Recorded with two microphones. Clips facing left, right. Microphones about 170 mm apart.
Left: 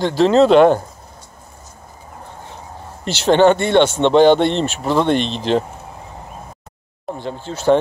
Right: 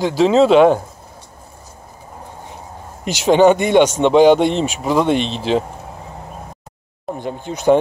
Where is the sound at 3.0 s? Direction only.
10° right (ahead or behind).